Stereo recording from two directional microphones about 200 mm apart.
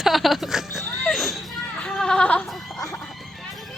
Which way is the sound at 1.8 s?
5° left (ahead or behind).